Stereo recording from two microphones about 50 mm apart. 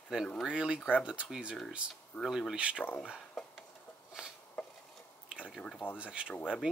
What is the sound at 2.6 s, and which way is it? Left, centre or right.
Speech, right.